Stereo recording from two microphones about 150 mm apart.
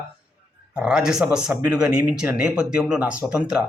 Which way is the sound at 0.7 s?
5° right (ahead or behind).